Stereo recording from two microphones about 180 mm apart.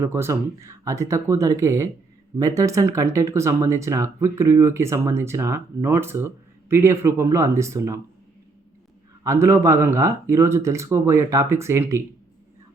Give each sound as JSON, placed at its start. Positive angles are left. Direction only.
{"t": 0.0, "sound": "speech", "side_deg": -15}
{"t": 9.2, "sound": "speech", "side_deg": -15}